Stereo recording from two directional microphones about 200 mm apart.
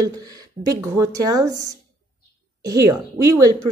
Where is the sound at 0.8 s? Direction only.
15° right (ahead or behind).